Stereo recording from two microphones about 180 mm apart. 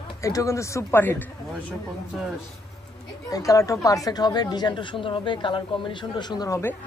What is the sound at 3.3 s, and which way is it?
Speech, 20° left (ahead or behind).